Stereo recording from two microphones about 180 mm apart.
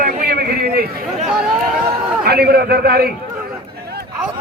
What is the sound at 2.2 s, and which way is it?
Speech, 60° right (ahead or behind).